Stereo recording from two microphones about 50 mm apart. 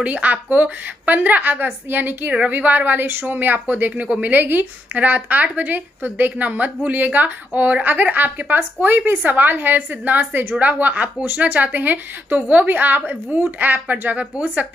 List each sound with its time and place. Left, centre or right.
0.0 s speech: right
3.9 s speech: right
4.2 s speech: right